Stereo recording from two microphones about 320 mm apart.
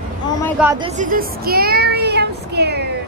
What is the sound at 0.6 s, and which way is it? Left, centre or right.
Speech, centre.